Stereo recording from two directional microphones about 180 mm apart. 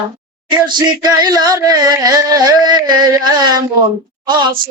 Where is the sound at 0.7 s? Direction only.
20° right (ahead or behind).